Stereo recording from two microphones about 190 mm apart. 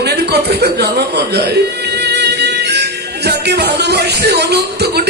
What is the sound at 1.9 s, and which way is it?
Music, 60° right (ahead or behind).